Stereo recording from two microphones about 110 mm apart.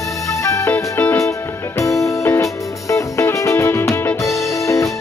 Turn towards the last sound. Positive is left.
turn(degrees=30)  # may be behind; listen again after turning